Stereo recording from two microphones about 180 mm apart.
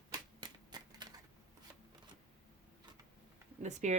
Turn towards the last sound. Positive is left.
turn(degrees=-40)  # may be behind; listen again after turning